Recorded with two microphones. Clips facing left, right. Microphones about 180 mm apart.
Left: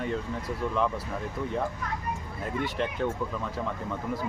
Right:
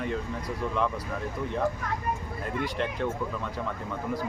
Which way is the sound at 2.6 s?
Centre (ahead or behind).